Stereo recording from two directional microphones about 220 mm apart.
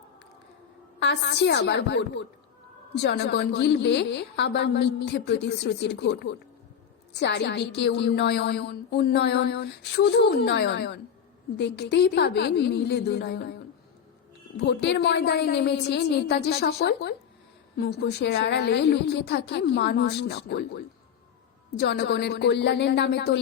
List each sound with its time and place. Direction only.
0.9 s a woman's voice: 50° left (ahead or behind)
14.7 s a woman's voice: 50° left (ahead or behind)